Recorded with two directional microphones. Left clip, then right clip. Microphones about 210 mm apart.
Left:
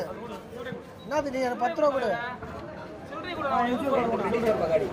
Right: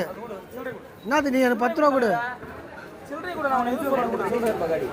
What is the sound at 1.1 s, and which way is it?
A man's voice, 60° right (ahead or behind).